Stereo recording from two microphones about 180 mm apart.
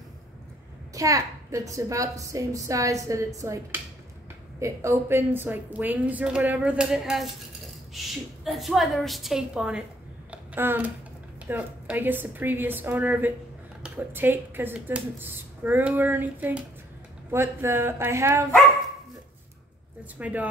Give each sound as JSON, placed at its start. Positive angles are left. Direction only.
{"t": 0.9, "sound": "a child's voice", "side_deg": -20}
{"t": 10.3, "sound": "a sound", "side_deg": -10}
{"t": 11.4, "sound": "a woman's voice", "side_deg": -10}
{"t": 20.2, "sound": "a woman's voice", "side_deg": -10}